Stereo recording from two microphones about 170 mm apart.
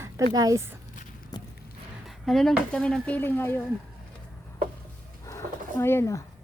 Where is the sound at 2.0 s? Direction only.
Centre (ahead or behind).